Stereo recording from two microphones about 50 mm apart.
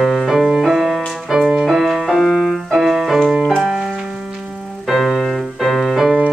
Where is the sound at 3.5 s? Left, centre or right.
Centre.